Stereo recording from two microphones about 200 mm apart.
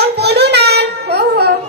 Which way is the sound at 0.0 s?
55° right (ahead or behind).